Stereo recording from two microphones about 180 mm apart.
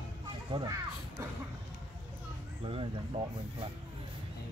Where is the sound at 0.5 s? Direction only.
25° right (ahead or behind).